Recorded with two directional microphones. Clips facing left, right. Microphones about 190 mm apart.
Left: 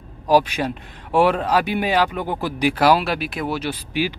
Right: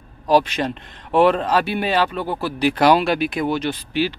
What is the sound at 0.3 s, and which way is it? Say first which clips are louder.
Speech: even; 10° left (ahead or behind).